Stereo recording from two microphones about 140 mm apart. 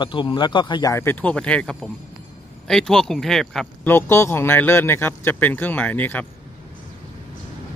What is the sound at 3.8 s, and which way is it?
A man's voice, 15° left (ahead or behind).